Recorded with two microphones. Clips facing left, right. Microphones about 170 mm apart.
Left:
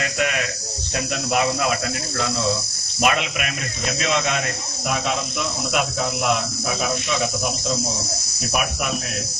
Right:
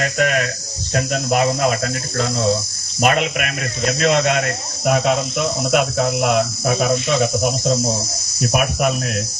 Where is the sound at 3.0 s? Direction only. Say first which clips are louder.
Right 4 dB; 45° right (ahead or behind).